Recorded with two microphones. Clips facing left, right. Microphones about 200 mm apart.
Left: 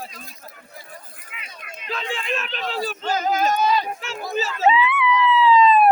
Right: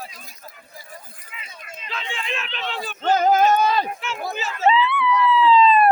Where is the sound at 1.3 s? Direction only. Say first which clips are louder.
Right 1 dB; 65° left (ahead or behind).